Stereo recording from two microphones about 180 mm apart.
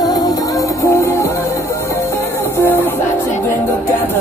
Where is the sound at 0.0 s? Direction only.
20° left (ahead or behind).